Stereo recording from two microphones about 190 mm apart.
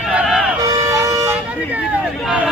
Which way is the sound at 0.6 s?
15° right (ahead or behind).